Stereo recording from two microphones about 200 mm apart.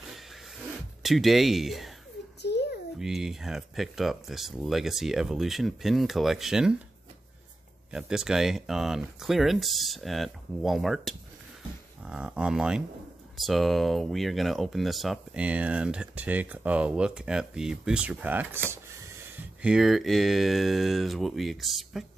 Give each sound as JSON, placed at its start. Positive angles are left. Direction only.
{"t": 1.0, "sound": "speech", "side_deg": 0}
{"t": 2.4, "sound": "a sound", "side_deg": 55}
{"t": 3.0, "sound": "speech", "side_deg": 0}
{"t": 7.9, "sound": "speech", "side_deg": -5}